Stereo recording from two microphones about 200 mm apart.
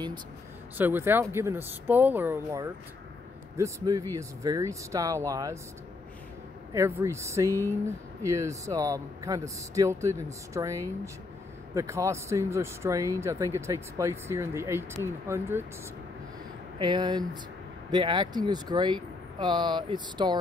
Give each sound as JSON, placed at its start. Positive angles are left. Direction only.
{"t": 0.7, "sound": "speech", "side_deg": -10}
{"t": 6.7, "sound": "speech", "side_deg": -15}
{"t": 16.7, "sound": "speech", "side_deg": -20}